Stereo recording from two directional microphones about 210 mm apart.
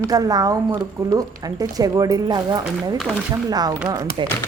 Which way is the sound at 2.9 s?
Centre (ahead or behind).